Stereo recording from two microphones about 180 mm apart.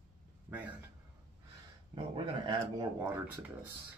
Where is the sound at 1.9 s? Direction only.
25° right (ahead or behind).